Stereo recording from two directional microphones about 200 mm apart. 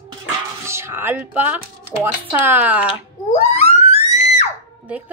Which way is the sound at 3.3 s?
35° left (ahead or behind).